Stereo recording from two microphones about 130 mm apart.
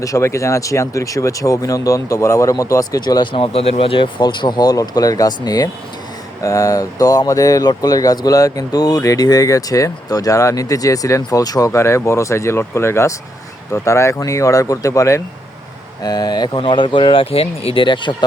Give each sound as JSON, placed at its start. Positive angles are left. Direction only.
{"t": 0.0, "sound": "speech", "side_deg": 25}